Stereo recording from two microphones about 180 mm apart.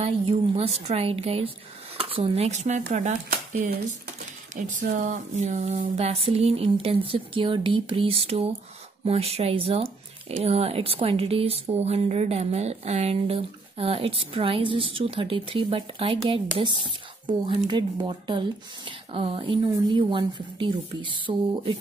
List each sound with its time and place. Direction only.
0.0 s speech: 35° right (ahead or behind)
4.6 s speech: 45° right (ahead or behind); by 21.7 s 30° right (ahead or behind)